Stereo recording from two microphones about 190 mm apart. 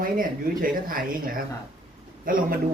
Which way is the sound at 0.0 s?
50° right (ahead or behind).